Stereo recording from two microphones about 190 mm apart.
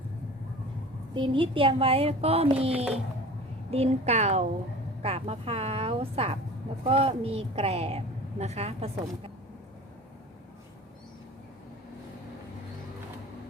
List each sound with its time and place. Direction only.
1.1 s a woman's voice: 25° right (ahead or behind)